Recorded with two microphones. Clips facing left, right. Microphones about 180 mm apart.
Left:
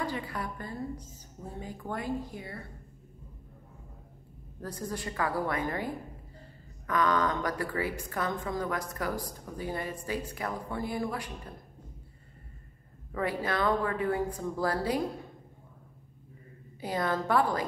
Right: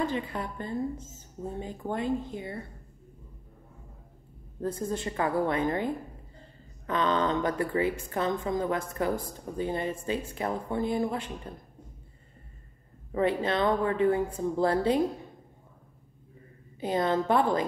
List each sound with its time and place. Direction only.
0.0 s speech: 25° right (ahead or behind)
4.6 s speech: 25° right (ahead or behind)
6.9 s speech: 25° right (ahead or behind)
13.1 s speech: 25° right (ahead or behind)
16.8 s speech: 25° right (ahead or behind)